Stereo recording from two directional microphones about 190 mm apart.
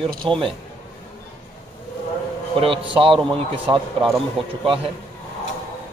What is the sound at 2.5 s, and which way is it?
A man's voice, 30° right (ahead or behind).